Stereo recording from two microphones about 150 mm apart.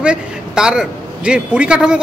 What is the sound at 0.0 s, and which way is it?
A man's voice, 5° right (ahead or behind).